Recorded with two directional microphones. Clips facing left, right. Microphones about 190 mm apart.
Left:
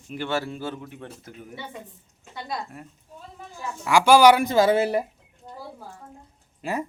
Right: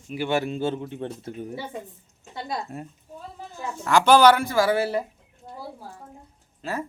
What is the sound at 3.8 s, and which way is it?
Speech, 10° left (ahead or behind).